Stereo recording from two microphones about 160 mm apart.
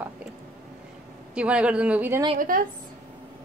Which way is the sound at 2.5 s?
60° right (ahead or behind).